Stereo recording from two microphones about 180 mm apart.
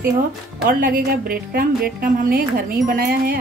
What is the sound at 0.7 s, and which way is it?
Speech, 50° right (ahead or behind).